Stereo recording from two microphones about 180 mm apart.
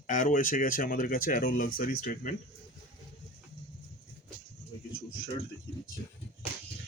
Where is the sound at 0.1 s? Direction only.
45° left (ahead or behind).